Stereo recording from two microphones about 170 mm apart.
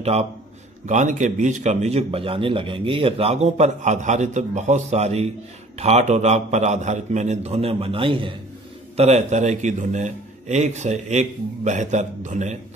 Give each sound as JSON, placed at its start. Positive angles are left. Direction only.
{"t": 0.0, "sound": "a man's voice", "side_deg": -40}